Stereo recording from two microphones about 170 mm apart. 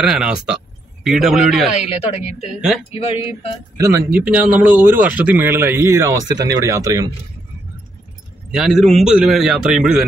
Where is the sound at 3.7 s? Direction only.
20° right (ahead or behind).